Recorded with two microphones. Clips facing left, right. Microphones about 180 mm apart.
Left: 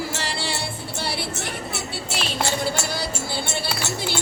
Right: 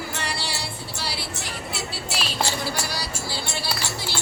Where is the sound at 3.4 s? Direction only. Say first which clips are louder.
Left 3 dB; 55° left (ahead or behind).